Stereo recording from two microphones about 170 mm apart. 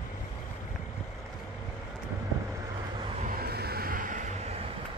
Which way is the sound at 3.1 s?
55° right (ahead or behind).